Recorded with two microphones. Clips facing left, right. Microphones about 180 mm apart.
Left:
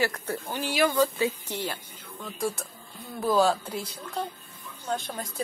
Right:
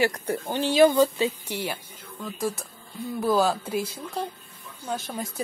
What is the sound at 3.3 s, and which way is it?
Speech, 5° right (ahead or behind).